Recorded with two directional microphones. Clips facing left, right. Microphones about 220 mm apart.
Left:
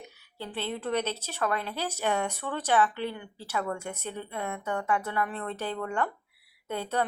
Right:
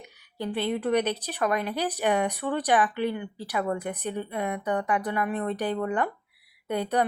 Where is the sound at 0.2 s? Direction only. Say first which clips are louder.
Right 7 dB; 15° right (ahead or behind).